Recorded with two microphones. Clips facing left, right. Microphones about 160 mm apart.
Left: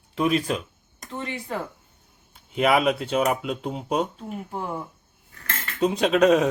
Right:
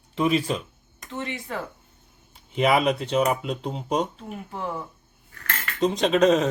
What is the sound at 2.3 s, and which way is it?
Speech, centre (ahead or behind).